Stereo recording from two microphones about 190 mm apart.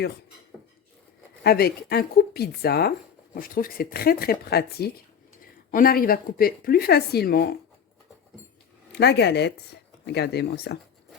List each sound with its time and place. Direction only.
1.5 s speech: 55° left (ahead or behind)
8.9 s speech: 60° left (ahead or behind)